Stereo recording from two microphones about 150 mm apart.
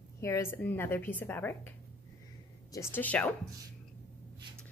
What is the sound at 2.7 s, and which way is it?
Speech, 15° left (ahead or behind).